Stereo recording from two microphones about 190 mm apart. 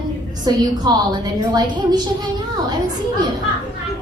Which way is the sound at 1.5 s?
20° right (ahead or behind).